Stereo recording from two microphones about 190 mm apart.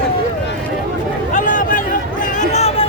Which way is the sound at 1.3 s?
45° left (ahead or behind).